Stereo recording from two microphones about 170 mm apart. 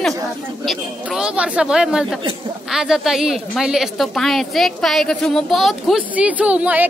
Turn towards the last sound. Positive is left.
turn(degrees=-10)  # may be behind; listen again after turning